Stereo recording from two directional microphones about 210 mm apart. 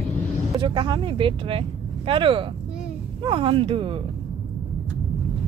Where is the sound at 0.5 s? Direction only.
25° right (ahead or behind).